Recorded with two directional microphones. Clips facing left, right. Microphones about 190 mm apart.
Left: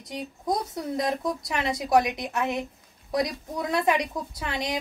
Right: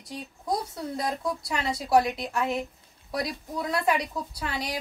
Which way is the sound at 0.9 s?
20° left (ahead or behind).